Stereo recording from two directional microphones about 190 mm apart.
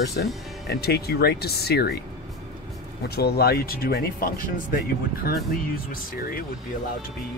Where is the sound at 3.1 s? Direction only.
55° left (ahead or behind).